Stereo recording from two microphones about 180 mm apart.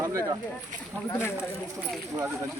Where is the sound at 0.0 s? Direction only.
15° right (ahead or behind).